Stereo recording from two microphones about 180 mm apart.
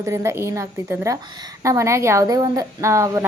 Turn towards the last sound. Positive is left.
turn(degrees=-15)  # may be behind; listen again after turning